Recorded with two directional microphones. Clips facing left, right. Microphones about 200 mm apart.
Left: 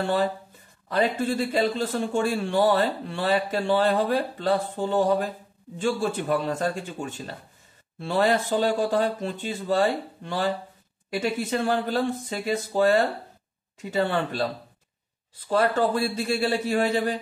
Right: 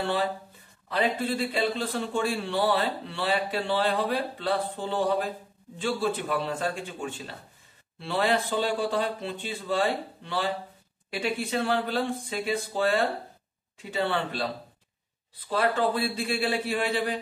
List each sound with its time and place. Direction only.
0.0 s a man's voice: 45° left (ahead or behind)